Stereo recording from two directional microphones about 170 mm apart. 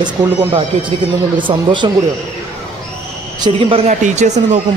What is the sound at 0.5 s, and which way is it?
A man's voice, 30° right (ahead or behind).